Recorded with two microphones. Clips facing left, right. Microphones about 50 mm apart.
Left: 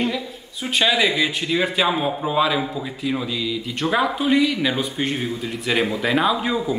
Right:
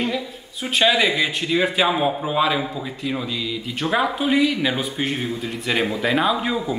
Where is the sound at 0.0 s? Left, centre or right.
Centre.